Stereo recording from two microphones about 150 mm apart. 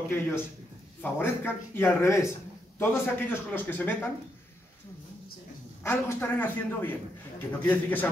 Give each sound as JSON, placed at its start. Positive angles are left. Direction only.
{"t": 1.0, "sound": "a man's voice", "side_deg": 15}
{"t": 5.9, "sound": "a man's voice", "side_deg": 10}